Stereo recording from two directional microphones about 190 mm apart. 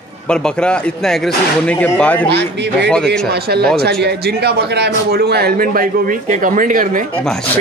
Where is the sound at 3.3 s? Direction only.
55° right (ahead or behind).